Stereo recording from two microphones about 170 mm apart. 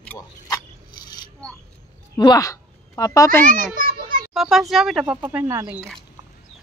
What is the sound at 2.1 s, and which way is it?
A woman's voice, 20° left (ahead or behind).